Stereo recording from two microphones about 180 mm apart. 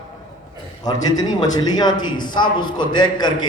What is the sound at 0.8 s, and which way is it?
A man's voice, 20° left (ahead or behind).